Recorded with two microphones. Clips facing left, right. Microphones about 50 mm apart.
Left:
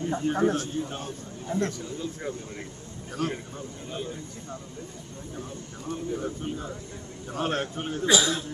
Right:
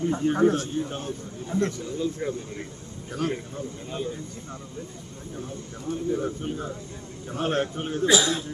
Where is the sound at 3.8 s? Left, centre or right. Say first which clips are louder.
Right 3 dB; centre.